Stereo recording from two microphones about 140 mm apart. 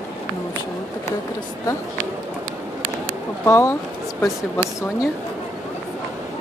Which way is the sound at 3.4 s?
20° left (ahead or behind).